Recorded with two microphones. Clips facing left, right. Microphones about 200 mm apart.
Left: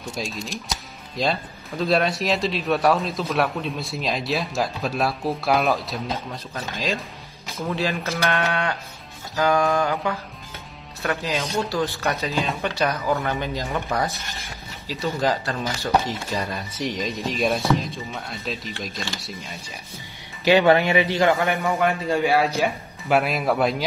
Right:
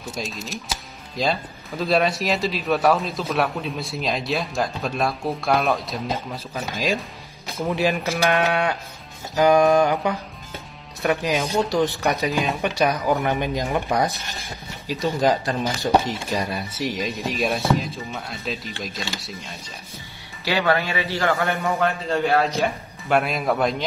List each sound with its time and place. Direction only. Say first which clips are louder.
0.0 s speech: left 1 dB; centre (ahead or behind)
20.4 s a man's voice: left 5 dB; 20° left (ahead or behind); by 23.8 s 5° left (ahead or behind)